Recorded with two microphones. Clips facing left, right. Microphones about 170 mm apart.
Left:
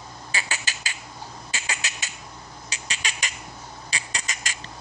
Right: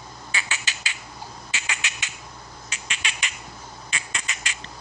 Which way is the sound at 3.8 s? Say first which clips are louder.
Even; 35° left (ahead or behind).